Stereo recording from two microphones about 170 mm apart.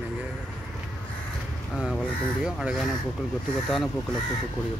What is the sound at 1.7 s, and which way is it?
Speech, 5° left (ahead or behind).